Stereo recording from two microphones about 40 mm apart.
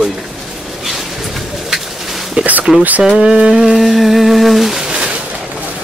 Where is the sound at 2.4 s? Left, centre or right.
Right.